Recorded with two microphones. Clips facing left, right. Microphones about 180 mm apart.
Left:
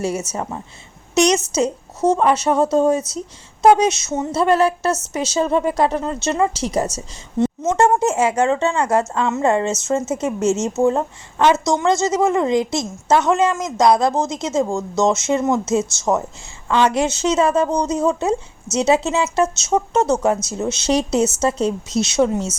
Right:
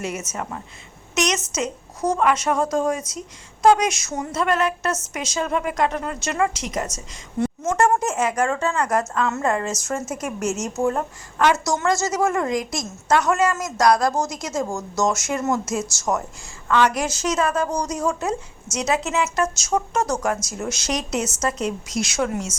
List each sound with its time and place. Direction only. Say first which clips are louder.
0.0 s a woman's voice: left 6 dB; 35° left (ahead or behind)
6.9 s a woman's voice: left 4 dB; 20° left (ahead or behind)